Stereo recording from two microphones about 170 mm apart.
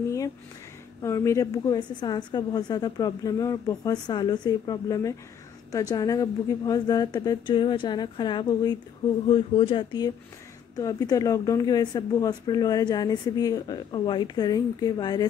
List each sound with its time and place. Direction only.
1.0 s speech: 15° left (ahead or behind)